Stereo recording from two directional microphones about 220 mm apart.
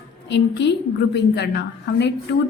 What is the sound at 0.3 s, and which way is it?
A woman's voice, 55° left (ahead or behind).